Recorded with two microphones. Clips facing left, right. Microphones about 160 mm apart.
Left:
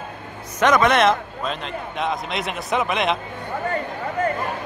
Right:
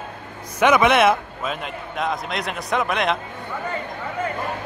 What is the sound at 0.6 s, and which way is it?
A man's voice, 10° right (ahead or behind).